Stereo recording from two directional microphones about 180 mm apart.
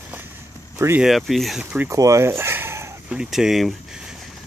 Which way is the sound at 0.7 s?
15° right (ahead or behind).